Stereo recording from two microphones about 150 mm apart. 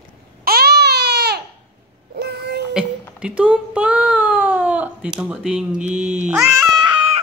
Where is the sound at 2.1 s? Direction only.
90° right.